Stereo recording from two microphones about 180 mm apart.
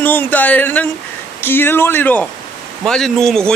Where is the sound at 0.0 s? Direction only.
10° left (ahead or behind).